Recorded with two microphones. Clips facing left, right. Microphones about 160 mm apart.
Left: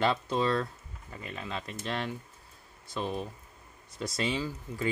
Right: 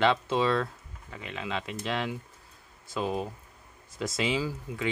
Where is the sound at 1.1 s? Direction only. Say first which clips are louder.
Right 3 dB; 90° right.